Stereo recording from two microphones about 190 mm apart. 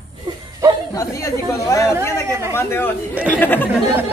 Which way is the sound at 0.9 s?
15° left (ahead or behind).